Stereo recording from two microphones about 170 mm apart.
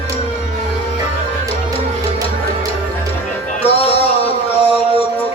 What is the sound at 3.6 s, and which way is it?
Music, 35° left (ahead or behind).